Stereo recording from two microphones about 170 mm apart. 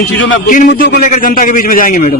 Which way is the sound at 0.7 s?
90° left.